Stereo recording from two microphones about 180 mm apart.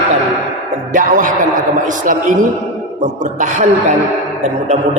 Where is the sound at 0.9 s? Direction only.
45° right (ahead or behind).